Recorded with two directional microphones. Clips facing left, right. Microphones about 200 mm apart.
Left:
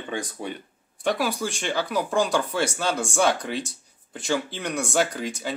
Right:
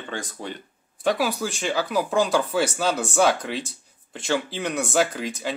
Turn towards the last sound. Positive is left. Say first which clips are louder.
# right 1 dB
turn(degrees=0)  # may be behind; listen again after turning